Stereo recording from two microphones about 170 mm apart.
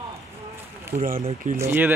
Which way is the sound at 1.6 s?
15° right (ahead or behind).